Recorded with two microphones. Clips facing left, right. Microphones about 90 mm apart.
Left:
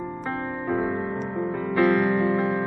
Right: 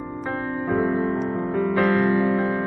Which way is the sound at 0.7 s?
Centre (ahead or behind).